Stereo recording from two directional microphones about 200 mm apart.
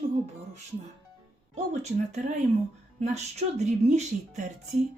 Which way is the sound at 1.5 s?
35° right (ahead or behind).